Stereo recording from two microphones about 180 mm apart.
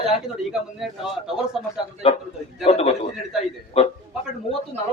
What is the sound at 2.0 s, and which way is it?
A man's voice, 30° left (ahead or behind).